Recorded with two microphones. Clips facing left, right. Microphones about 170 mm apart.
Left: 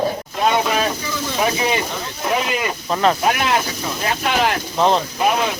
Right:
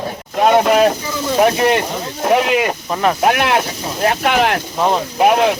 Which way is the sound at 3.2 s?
60° right (ahead or behind).